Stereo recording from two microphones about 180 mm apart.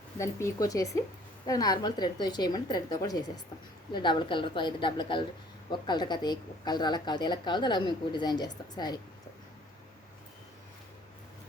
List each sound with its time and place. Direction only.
0.2 s speech: 15° left (ahead or behind)